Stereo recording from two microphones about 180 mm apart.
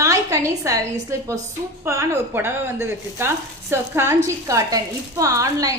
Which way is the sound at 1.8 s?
15° right (ahead or behind).